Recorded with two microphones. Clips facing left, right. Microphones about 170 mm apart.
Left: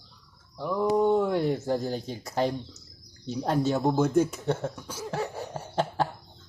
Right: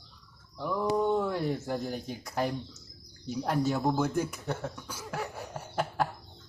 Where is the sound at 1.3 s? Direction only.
25° left (ahead or behind).